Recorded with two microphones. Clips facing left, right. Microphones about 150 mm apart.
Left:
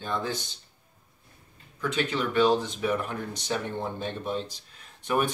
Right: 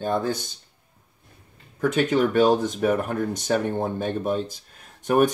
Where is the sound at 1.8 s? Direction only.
45° right (ahead or behind).